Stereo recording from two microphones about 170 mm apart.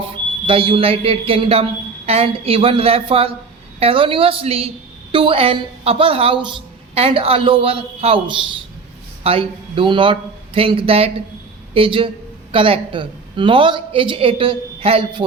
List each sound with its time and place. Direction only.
0.0 s a woman's voice: 30° right (ahead or behind)